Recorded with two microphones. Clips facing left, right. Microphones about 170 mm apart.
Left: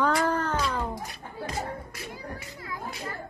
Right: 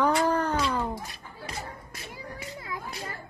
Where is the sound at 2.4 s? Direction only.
20° right (ahead or behind).